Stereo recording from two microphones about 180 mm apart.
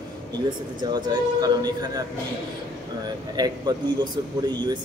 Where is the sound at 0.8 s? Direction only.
25° right (ahead or behind).